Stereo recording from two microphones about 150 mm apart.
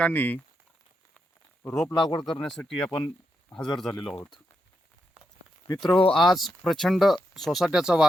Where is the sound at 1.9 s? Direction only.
30° left (ahead or behind).